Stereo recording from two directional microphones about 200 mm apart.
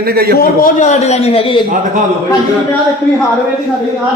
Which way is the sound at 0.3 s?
40° left (ahead or behind).